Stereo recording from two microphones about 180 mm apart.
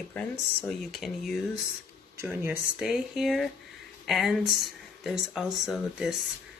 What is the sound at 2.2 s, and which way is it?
Speech, 10° right (ahead or behind).